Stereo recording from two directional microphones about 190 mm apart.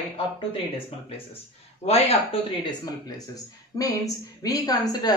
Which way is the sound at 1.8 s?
35° left (ahead or behind).